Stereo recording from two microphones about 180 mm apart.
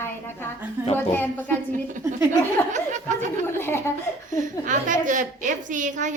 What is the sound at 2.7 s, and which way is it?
Speech, 45° right (ahead or behind).